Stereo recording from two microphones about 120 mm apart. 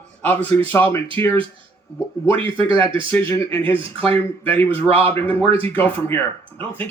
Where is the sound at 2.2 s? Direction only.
45° right (ahead or behind).